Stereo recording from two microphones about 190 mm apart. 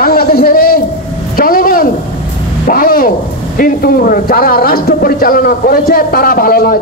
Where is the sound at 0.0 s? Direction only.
50° left (ahead or behind).